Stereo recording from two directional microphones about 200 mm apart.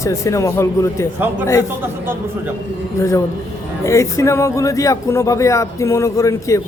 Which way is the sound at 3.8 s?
15° left (ahead or behind).